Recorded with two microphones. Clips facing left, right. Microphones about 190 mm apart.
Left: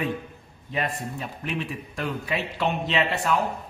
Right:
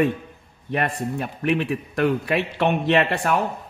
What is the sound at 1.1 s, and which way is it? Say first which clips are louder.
A man's voice: right 8 dB; 65° right (ahead or behind).